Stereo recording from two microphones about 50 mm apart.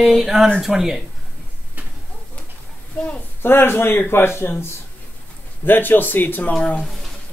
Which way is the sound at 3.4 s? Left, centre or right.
Left.